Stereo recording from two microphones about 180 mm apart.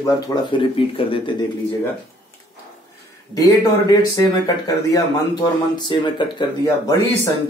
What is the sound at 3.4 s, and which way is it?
Speech, 20° left (ahead or behind).